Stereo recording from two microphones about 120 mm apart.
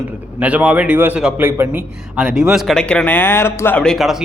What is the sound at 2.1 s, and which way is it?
Speech, 5° right (ahead or behind).